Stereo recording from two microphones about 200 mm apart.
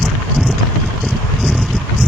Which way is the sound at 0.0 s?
Centre (ahead or behind).